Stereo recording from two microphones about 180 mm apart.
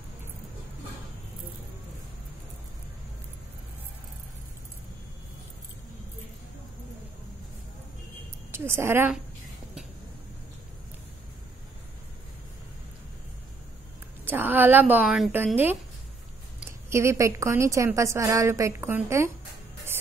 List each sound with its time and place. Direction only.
8.5 s a woman's voice: 15° right (ahead or behind)
14.2 s a woman's voice: 10° right (ahead or behind)